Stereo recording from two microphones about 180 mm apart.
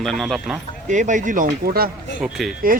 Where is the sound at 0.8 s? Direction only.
45° right (ahead or behind).